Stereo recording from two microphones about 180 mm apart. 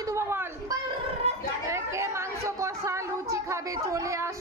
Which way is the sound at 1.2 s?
35° right (ahead or behind).